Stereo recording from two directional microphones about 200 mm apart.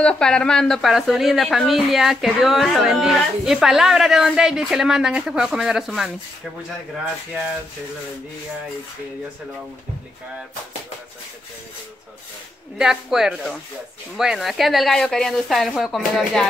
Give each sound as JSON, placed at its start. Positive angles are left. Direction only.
{"t": 0.0, "sound": "speech", "side_deg": 5}
{"t": 12.7, "sound": "speech", "side_deg": 0}